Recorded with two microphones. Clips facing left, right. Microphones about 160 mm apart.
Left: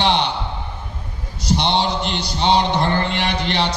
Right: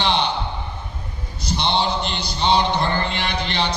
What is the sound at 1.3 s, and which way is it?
A man's voice, 75° left (ahead or behind).